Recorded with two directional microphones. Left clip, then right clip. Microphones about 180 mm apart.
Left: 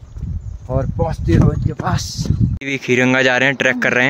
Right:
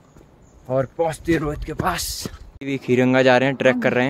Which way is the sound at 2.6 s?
5° left (ahead or behind).